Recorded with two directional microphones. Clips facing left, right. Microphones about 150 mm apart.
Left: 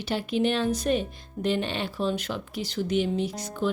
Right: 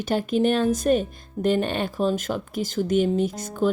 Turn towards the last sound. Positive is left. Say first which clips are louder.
# right 5 dB
turn(degrees=-50)  # may be behind; listen again after turning